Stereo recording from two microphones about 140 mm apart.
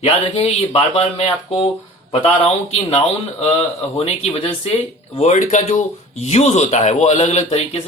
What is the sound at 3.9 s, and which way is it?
Speech, 45° left (ahead or behind).